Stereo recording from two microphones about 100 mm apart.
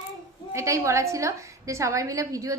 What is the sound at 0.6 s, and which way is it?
A woman's voice, 30° right (ahead or behind).